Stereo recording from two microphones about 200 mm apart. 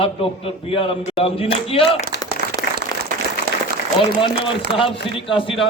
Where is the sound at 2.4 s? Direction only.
55° left (ahead or behind).